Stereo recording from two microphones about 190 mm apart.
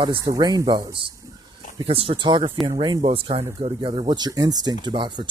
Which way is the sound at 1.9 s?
30° right (ahead or behind).